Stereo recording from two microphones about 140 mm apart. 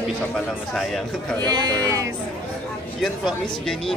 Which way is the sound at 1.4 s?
30° right (ahead or behind).